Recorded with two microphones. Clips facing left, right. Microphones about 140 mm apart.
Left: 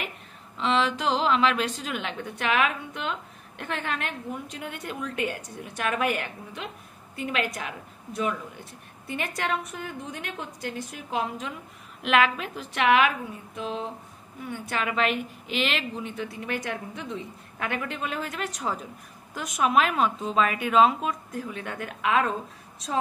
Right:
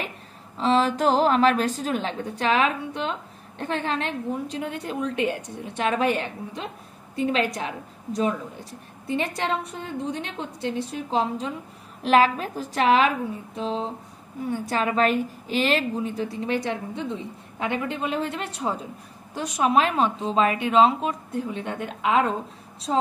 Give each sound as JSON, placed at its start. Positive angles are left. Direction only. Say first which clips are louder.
{"t": 0.6, "sound": "a woman's voice", "louder": "right 4 dB", "side_deg": -40}